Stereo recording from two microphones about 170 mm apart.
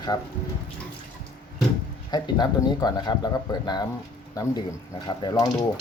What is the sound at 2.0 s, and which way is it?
Speech, 25° left (ahead or behind).